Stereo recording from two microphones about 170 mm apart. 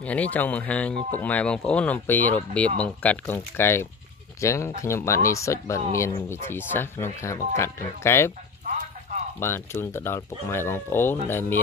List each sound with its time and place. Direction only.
0.0 s speech: 10° left (ahead or behind)
9.4 s speech: 15° left (ahead or behind)